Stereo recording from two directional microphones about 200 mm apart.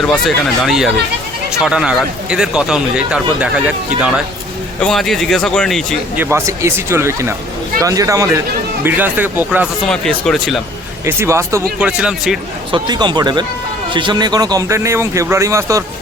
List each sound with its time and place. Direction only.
0.0 s speech: centre (ahead or behind)
4.8 s speech: centre (ahead or behind)
6.1 s speech: 15° right (ahead or behind)
9.9 s speech: 5° left (ahead or behind)
11.0 s speech: 15° right (ahead or behind)
12.7 s speech: 20° right (ahead or behind)